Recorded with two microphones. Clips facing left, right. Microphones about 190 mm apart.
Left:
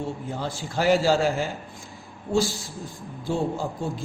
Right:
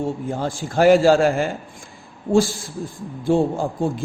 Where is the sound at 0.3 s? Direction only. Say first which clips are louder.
Right 6 dB; 45° right (ahead or behind).